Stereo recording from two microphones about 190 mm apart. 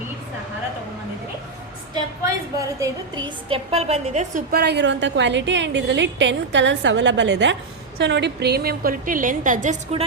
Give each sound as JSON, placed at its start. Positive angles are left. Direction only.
{"t": 2.2, "sound": "a woman's voice", "side_deg": -15}
{"t": 4.6, "sound": "a woman's voice", "side_deg": -65}